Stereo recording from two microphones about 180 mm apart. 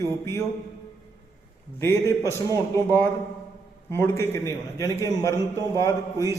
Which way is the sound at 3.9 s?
15° left (ahead or behind).